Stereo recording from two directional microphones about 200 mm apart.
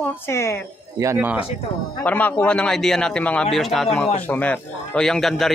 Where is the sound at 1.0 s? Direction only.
10° right (ahead or behind).